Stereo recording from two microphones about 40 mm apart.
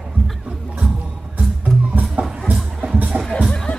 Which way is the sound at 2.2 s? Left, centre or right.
Right.